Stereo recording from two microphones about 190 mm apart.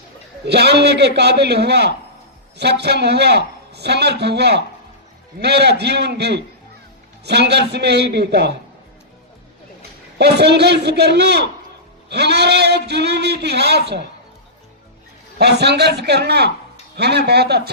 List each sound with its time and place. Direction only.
0.4 s a man's voice: 60° right (ahead or behind)
10.2 s a man's voice: 60° right (ahead or behind)
15.4 s a man's voice: 60° right (ahead or behind)